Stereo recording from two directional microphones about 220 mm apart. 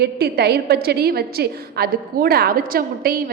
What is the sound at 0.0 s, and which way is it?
A woman's voice, 45° right (ahead or behind).